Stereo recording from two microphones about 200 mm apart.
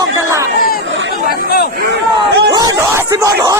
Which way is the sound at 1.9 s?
60° right (ahead or behind).